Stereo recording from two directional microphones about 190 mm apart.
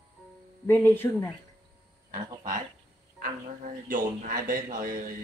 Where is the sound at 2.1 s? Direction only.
45° right (ahead or behind).